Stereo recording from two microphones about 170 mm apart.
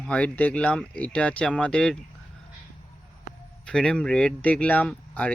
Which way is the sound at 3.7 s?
5° left (ahead or behind).